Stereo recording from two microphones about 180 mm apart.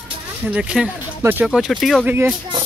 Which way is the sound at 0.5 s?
5° right (ahead or behind).